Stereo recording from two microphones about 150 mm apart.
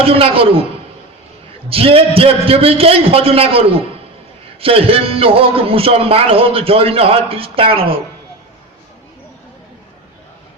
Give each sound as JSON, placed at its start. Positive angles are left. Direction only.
{"t": 0.0, "sound": "speech", "side_deg": -40}
{"t": 1.7, "sound": "speech", "side_deg": -40}